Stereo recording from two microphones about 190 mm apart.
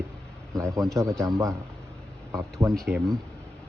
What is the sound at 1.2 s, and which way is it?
A man's voice, 15° right (ahead or behind).